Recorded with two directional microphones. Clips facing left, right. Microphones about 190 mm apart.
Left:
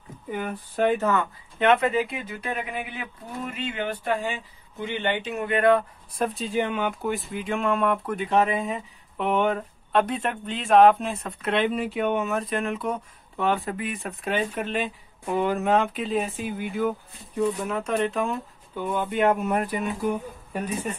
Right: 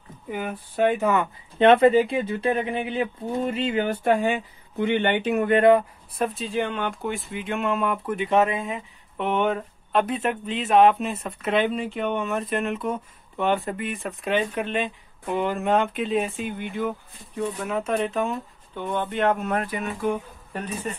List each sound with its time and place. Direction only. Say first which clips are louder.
0.3 s speech: even; 5° right (ahead or behind)
1.6 s speech: right 6 dB; 30° right (ahead or behind)
4.0 s speech: right 6 dB; 55° right (ahead or behind)
5.6 s speech: right 2 dB; 20° right (ahead or behind)
6.1 s a woman's voice: even; centre (ahead or behind)